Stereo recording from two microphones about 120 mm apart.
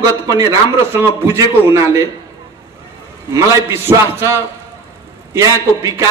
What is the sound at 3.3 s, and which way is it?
A man's voice, 25° right (ahead or behind).